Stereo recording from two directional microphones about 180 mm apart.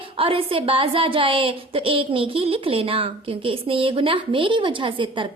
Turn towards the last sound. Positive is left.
turn(degrees=-30)  # may be behind; listen again after turning